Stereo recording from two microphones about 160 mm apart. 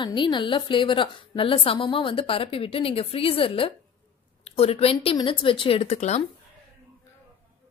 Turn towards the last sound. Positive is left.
turn(degrees=45)  # may be behind; listen again after turning